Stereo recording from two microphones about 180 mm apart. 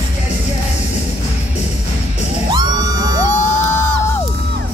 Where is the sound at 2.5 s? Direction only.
20° right (ahead or behind).